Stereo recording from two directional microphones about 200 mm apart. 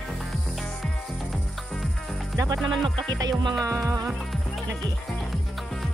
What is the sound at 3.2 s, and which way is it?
Music, 20° right (ahead or behind).